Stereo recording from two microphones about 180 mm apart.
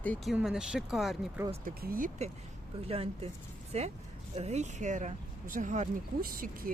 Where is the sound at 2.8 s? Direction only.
30° right (ahead or behind); by 6.7 s 55° right (ahead or behind).